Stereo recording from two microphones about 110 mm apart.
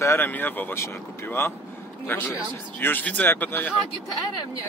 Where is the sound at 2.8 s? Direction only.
15° left (ahead or behind).